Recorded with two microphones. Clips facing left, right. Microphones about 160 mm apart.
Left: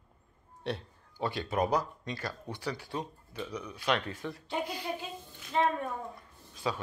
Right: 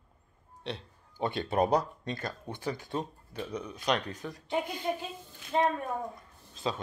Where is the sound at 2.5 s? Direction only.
45° right (ahead or behind).